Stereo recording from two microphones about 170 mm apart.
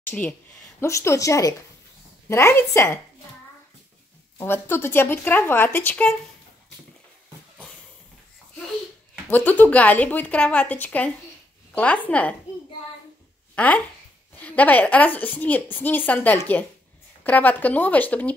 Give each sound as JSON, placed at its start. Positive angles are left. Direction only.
{"t": 0.0, "sound": "a woman's voice", "side_deg": 10}
{"t": 4.4, "sound": "a woman's voice", "side_deg": 10}
{"t": 9.1, "sound": "a woman's voice", "side_deg": 10}
{"t": 13.6, "sound": "a woman's voice", "side_deg": 10}